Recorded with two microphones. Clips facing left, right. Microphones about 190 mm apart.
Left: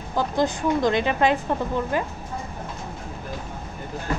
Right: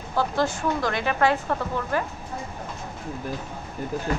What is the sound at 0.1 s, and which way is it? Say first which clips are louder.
Speech: left 1 dB; 20° left (ahead or behind).